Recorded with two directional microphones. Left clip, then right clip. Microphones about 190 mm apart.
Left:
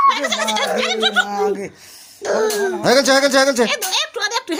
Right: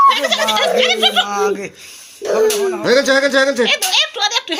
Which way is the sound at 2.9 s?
65° left (ahead or behind).